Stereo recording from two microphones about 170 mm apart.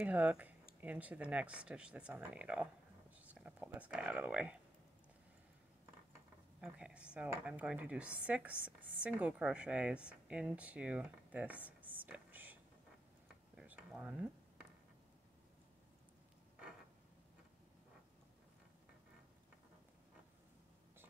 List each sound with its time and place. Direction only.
0.0 s speech: 10° right (ahead or behind)
6.6 s speech: 5° right (ahead or behind)
13.6 s a sound: 10° right (ahead or behind)